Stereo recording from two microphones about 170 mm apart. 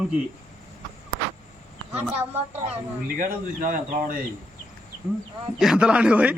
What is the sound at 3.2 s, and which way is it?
Speech, 55° right (ahead or behind).